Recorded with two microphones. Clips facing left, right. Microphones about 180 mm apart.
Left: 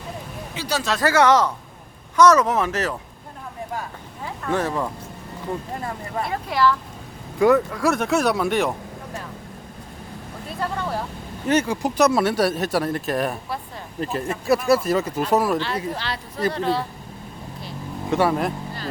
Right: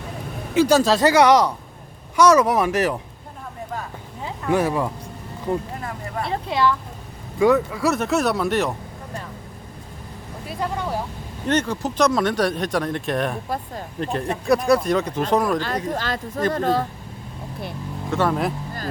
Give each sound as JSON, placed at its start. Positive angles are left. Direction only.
{"t": 0.5, "sound": "speech", "side_deg": -45}
{"t": 0.9, "sound": "speech", "side_deg": -15}
{"t": 4.2, "sound": "a sound", "side_deg": -15}
{"t": 6.2, "sound": "speech", "side_deg": -25}
{"t": 7.3, "sound": "speech", "side_deg": 0}
{"t": 10.6, "sound": "speech", "side_deg": -15}
{"t": 11.4, "sound": "speech", "side_deg": 10}
{"t": 15.5, "sound": "speech", "side_deg": -45}
{"t": 18.1, "sound": "speech", "side_deg": 10}